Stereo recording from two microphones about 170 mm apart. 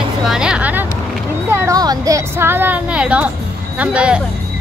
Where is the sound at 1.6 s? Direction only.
20° right (ahead or behind); by 4.2 s 5° right (ahead or behind).